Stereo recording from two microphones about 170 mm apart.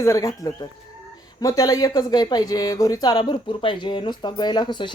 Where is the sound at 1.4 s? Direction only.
20° left (ahead or behind).